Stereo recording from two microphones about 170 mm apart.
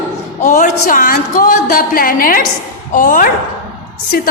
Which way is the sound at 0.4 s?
50° left (ahead or behind).